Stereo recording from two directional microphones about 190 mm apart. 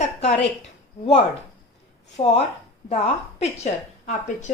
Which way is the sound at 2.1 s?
35° left (ahead or behind).